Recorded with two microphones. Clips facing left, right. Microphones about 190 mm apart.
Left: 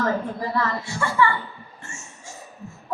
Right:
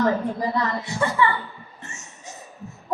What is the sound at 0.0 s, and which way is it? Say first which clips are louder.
A woman's voice: right 3 dB; 20° right (ahead or behind).